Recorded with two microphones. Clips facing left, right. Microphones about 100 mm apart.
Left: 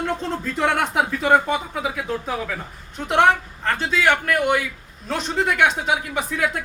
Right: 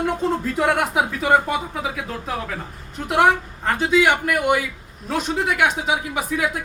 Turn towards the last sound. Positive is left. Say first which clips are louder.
# even
turn(degrees=-10)  # may be behind; listen again after turning